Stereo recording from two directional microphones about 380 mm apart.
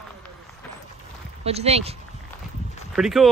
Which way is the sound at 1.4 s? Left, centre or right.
Centre.